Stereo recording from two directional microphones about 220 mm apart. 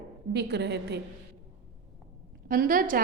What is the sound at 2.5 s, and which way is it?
Speech, 40° right (ahead or behind).